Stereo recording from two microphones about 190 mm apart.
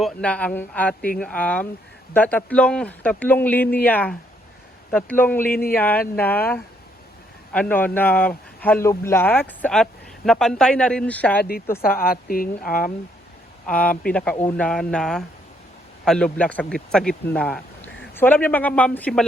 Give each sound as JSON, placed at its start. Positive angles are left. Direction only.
{"t": 0.0, "sound": "a man's voice", "side_deg": 5}
{"t": 5.5, "sound": "speech", "side_deg": 50}
{"t": 5.7, "sound": "a man's voice", "side_deg": 10}
{"t": 11.8, "sound": "speech", "side_deg": 50}
{"t": 14.0, "sound": "a man's voice", "side_deg": 5}